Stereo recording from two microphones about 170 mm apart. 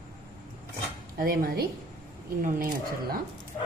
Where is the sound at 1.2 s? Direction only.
60° right (ahead or behind).